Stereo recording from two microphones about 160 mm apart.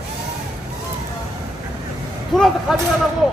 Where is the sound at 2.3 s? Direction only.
Centre (ahead or behind).